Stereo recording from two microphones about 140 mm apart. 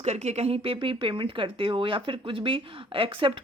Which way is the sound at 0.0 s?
50° right (ahead or behind).